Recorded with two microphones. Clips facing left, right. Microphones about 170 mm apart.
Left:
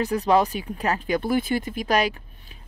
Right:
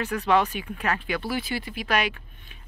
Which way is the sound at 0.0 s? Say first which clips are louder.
Left 3 dB; 35° left (ahead or behind).